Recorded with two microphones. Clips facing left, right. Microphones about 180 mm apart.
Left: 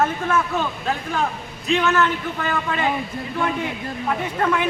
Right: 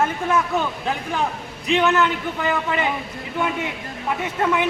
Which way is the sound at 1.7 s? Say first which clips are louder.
Right 1 dB; 20° right (ahead or behind).